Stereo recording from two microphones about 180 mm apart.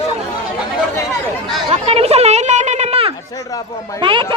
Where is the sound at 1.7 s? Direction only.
35° right (ahead or behind).